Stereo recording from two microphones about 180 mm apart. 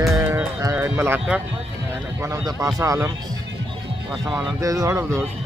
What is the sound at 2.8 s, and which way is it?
Speech, 20° right (ahead or behind).